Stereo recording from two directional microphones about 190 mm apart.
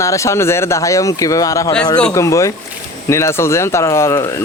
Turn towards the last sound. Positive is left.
turn(degrees=15)  # may be behind; listen again after turning